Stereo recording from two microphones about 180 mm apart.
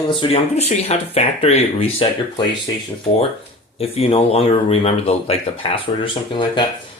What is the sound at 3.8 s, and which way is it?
Speech, 35° left (ahead or behind).